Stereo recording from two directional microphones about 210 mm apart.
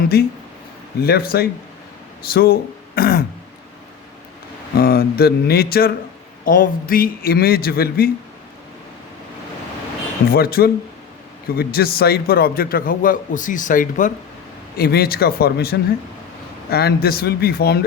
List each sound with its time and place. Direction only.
0.0 s a man's voice: 45° left (ahead or behind)
4.8 s a man's voice: 45° left (ahead or behind)
10.3 s a man's voice: 45° left (ahead or behind)